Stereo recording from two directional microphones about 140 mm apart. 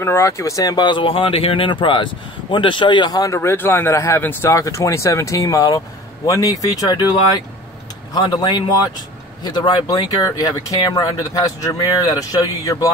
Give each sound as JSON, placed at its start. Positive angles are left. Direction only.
{"t": 0.0, "sound": "speech", "side_deg": 20}
{"t": 3.3, "sound": "speech", "side_deg": 15}